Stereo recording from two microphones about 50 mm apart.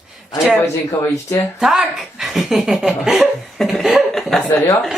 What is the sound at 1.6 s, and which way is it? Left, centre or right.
Speech, centre.